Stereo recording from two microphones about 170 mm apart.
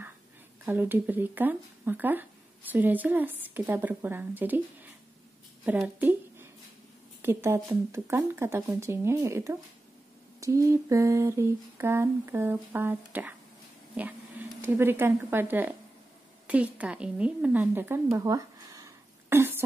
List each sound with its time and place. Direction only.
0.7 s speech: 10° right (ahead or behind)
5.7 s a woman's voice: 10° right (ahead or behind)
18.1 s a sound: 20° right (ahead or behind)